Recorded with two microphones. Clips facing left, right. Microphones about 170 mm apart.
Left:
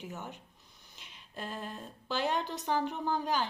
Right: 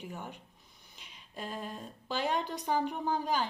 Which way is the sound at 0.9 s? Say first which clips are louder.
Even; centre (ahead or behind).